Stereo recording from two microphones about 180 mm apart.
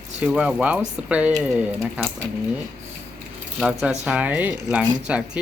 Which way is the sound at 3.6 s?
5° right (ahead or behind).